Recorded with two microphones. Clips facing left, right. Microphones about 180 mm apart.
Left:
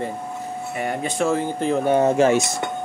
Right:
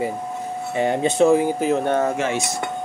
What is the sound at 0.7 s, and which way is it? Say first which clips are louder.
Speech: right 6 dB; 25° right (ahead or behind).